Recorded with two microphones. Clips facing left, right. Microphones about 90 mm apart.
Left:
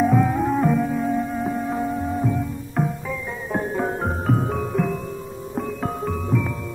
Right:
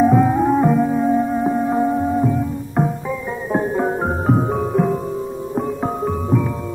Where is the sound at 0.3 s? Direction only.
20° right (ahead or behind).